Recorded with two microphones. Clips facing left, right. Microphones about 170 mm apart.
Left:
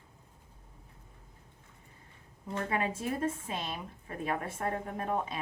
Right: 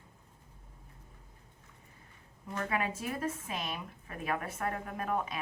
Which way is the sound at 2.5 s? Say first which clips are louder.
Left 1 dB; 30° left (ahead or behind).